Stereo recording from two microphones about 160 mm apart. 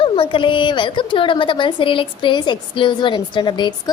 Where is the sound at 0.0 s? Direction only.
35° left (ahead or behind).